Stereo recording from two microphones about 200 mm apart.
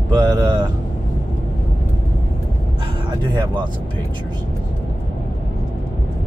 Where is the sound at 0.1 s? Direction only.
20° right (ahead or behind).